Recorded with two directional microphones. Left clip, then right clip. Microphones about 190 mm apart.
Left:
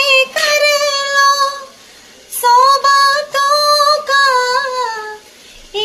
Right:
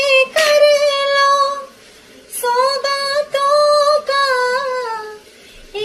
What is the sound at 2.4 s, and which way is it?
Female singing, 10° right (ahead or behind).